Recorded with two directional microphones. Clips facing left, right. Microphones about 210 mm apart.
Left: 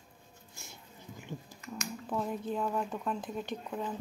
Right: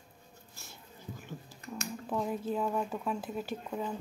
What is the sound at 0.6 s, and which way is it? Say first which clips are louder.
Music: right 3 dB; 15° left (ahead or behind).